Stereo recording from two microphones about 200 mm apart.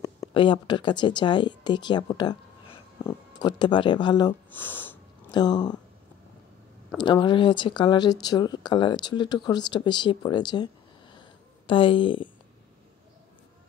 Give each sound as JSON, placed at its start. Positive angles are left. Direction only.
{"t": 0.0, "sound": "speech", "side_deg": 20}
{"t": 4.5, "sound": "speech", "side_deg": 10}
{"t": 5.3, "sound": "speech", "side_deg": 20}
{"t": 7.0, "sound": "speech", "side_deg": 25}
{"t": 11.1, "sound": "a sound", "side_deg": 25}